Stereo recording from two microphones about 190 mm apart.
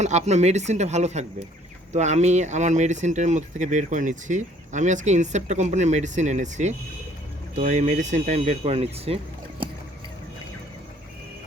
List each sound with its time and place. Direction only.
0.0 s speech: 35° right (ahead or behind)